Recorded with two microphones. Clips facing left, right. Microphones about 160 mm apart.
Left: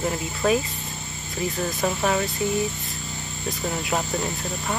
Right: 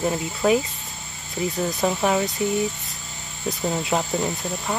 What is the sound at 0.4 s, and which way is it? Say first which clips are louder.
Speech: right 2 dB; 10° right (ahead or behind).